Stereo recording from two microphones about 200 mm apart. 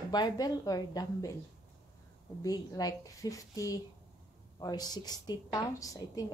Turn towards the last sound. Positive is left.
turn(degrees=15)  # may be behind; listen again after turning